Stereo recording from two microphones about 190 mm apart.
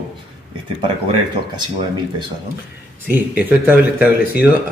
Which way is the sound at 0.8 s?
25° right (ahead or behind).